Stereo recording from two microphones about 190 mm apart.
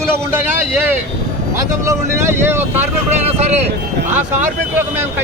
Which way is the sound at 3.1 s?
35° right (ahead or behind).